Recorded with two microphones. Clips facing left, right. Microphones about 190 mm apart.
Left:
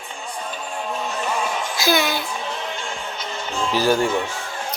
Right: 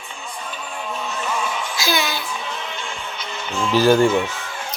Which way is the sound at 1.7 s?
50° left (ahead or behind).